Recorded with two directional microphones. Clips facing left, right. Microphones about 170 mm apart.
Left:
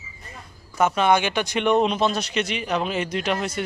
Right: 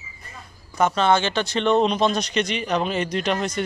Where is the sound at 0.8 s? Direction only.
10° left (ahead or behind).